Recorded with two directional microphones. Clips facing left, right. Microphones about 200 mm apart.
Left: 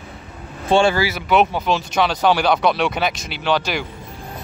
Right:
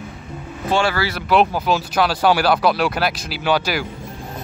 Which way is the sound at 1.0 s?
Centre (ahead or behind).